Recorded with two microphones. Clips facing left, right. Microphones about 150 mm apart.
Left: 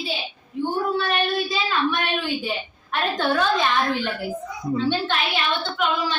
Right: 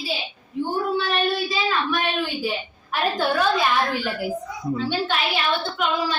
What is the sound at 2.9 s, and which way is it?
A woman's voice, 5° right (ahead or behind).